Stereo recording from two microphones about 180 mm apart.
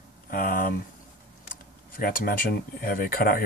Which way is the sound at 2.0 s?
55° left (ahead or behind).